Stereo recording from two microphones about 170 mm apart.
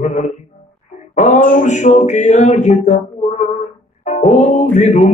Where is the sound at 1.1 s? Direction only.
45° left (ahead or behind).